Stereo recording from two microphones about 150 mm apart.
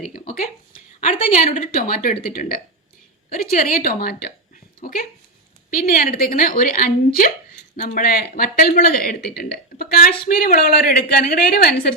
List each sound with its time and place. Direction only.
0.1 s speech: 70° left (ahead or behind)
1.0 s a woman's voice: 55° left (ahead or behind)
1.6 s a woman's voice: 70° left (ahead or behind); by 4.3 s 90° left
4.8 s a woman's voice: 75° left (ahead or behind); by 11.9 s 90° left